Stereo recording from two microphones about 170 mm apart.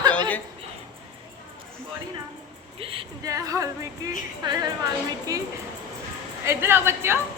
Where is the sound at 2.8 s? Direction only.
30° right (ahead or behind).